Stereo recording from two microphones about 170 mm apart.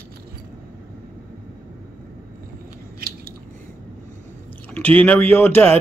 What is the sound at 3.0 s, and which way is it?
Scissors, 60° right (ahead or behind).